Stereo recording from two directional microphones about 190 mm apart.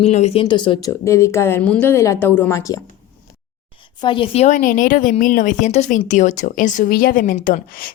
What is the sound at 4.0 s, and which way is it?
Speech, 25° left (ahead or behind).